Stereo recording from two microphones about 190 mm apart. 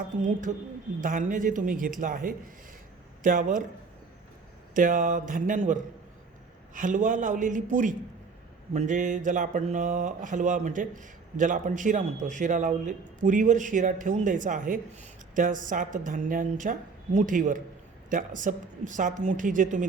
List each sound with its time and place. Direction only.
0.2 s a woman's voice: 40° right (ahead or behind)
4.7 s a woman's voice: 45° right (ahead or behind)